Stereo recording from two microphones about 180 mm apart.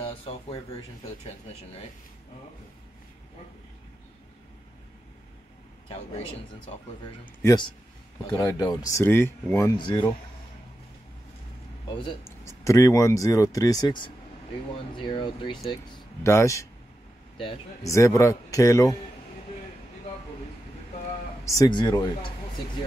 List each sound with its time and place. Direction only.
0.0 s a sound: 30° left (ahead or behind)
8.3 s speech: 20° left (ahead or behind)
12.3 s a man's voice: 15° left (ahead or behind)
16.2 s speech: 15° left (ahead or behind)
17.8 s speech: 15° left (ahead or behind)
21.5 s a man's voice: 20° left (ahead or behind)